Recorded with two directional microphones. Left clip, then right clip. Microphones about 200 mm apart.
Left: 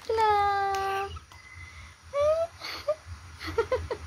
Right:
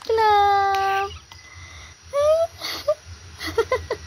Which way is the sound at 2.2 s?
35° right (ahead or behind).